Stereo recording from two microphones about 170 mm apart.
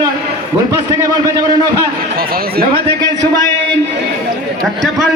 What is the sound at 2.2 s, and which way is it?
Speech, 60° right (ahead or behind).